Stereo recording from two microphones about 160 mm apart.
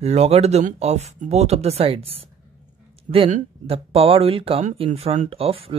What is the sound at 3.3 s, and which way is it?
Speech, 35° right (ahead or behind).